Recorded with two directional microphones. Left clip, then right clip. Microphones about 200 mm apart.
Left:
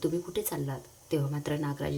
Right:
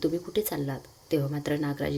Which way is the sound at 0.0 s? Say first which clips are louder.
Right 3 dB; 10° right (ahead or behind).